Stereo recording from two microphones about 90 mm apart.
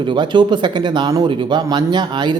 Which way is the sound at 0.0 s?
60° right (ahead or behind).